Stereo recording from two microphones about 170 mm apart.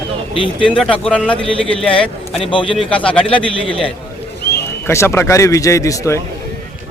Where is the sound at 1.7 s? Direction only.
30° left (ahead or behind).